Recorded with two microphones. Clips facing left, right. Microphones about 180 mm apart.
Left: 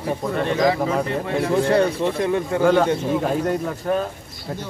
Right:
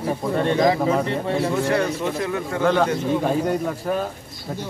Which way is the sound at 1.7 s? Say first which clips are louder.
Left 3 dB; 30° left (ahead or behind).